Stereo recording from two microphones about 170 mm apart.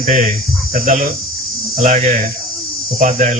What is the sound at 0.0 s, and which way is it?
Speech, 45° right (ahead or behind).